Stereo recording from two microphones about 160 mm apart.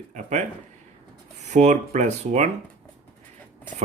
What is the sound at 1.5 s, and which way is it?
Speech, 45° right (ahead or behind).